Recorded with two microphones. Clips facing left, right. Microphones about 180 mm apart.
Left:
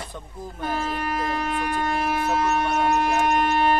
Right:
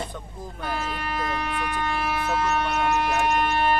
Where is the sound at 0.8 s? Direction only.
40° left (ahead or behind).